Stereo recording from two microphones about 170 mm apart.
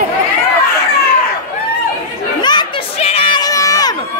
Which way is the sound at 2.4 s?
25° left (ahead or behind).